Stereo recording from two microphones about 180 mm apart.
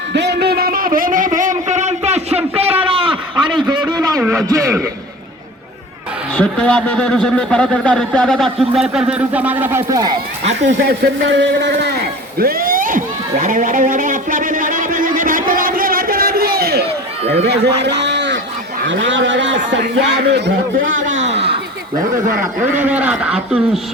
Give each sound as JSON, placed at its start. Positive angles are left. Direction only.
{"t": 0.1, "sound": "a sound", "side_deg": -70}
{"t": 4.3, "sound": "speech", "side_deg": -15}
{"t": 6.3, "sound": "a man's voice", "side_deg": 5}
{"t": 10.8, "sound": "a sound", "side_deg": -70}
{"t": 17.4, "sound": "speech", "side_deg": -70}
{"t": 18.9, "sound": "a man's voice", "side_deg": -90}
{"t": 20.3, "sound": "a man's voice", "side_deg": -70}
{"t": 21.2, "sound": "a sound", "side_deg": -35}
{"t": 22.7, "sound": "a man's voice", "side_deg": -10}